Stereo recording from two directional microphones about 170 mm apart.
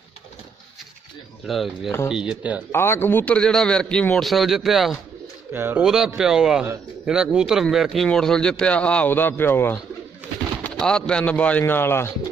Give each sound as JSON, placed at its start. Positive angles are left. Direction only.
{"t": 1.4, "sound": "speech", "side_deg": 0}
{"t": 2.7, "sound": "speech", "side_deg": 15}
{"t": 5.5, "sound": "speech", "side_deg": -10}